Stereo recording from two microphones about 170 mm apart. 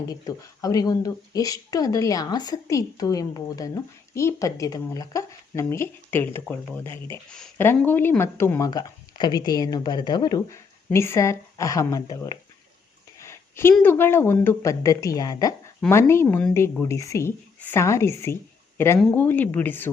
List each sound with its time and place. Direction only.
0.1 s speech: 20° left (ahead or behind)
13.1 s a sound: 15° left (ahead or behind)
13.8 s speech: 15° left (ahead or behind)